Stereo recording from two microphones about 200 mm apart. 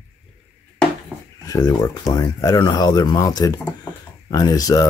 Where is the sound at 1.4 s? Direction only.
15° left (ahead or behind).